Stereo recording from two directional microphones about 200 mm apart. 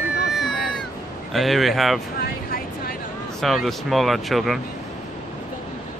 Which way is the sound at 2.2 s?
45° left (ahead or behind).